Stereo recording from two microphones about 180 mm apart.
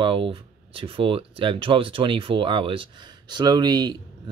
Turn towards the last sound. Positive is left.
turn(degrees=-25)  # may be behind; listen again after turning